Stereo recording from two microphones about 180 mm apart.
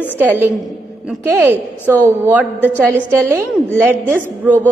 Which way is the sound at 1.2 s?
10° right (ahead or behind).